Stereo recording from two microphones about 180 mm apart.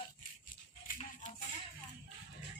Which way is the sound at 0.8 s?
40° left (ahead or behind).